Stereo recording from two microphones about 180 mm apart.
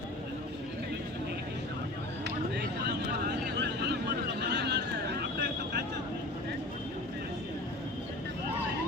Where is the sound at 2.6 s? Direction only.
65° right (ahead or behind).